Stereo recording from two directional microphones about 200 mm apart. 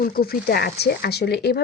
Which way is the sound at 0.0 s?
50° left (ahead or behind).